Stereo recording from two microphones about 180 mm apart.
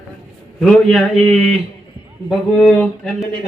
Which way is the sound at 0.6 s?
Centre (ahead or behind).